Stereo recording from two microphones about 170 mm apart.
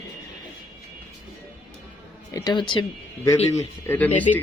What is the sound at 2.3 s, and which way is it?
Speech, 25° left (ahead or behind).